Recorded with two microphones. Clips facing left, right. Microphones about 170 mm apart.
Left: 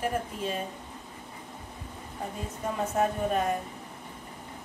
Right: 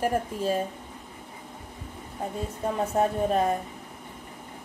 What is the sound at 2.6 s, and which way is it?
Speech, 35° right (ahead or behind).